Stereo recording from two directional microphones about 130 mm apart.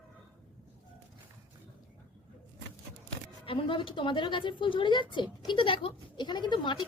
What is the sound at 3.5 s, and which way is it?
Speech, 40° left (ahead or behind).